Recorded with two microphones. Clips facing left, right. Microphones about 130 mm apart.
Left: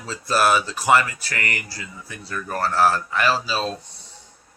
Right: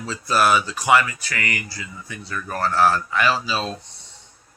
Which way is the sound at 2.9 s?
Centre (ahead or behind).